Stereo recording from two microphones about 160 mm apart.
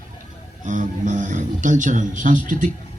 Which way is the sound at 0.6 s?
50° right (ahead or behind).